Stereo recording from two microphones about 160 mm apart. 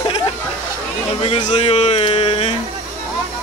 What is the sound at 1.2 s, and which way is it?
Speech, 40° left (ahead or behind).